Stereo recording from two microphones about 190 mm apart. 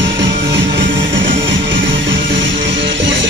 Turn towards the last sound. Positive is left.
turn(degrees=-25)  # may be behind; listen again after turning